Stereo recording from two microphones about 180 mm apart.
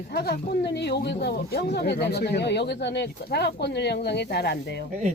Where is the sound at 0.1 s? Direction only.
60° left (ahead or behind).